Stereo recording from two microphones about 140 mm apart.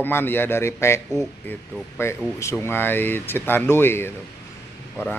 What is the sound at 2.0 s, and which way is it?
Speech, 20° left (ahead or behind).